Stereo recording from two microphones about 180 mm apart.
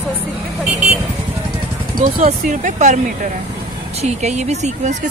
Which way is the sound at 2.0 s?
45° right (ahead or behind).